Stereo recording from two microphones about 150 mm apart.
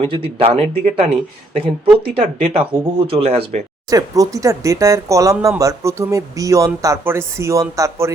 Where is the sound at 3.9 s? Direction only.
25° right (ahead or behind).